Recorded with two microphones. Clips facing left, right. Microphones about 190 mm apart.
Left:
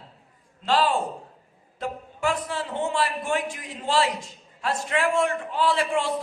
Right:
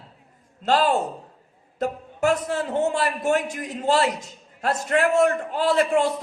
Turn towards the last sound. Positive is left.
turn(degrees=-45)  # may be behind; listen again after turning